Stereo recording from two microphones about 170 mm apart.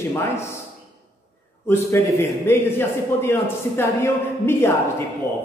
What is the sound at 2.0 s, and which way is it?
Speech, 15° left (ahead or behind).